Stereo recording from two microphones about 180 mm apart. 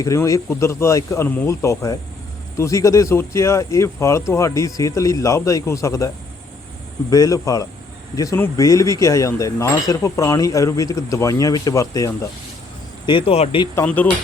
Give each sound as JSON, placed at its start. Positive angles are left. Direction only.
{"t": 0.0, "sound": "speech", "side_deg": 20}
{"t": 7.1, "sound": "speech", "side_deg": 20}
{"t": 13.1, "sound": "speech", "side_deg": 30}
{"t": 13.7, "sound": "speech", "side_deg": 10}